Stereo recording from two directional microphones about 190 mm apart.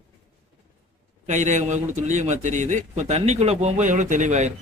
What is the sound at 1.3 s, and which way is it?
A man's voice, 40° right (ahead or behind).